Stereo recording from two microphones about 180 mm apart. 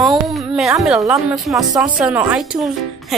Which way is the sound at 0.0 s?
Centre (ahead or behind).